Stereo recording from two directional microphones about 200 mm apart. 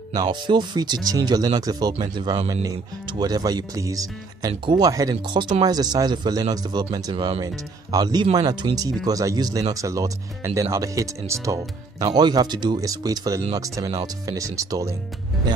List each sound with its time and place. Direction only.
0.1 s speech: 20° right (ahead or behind)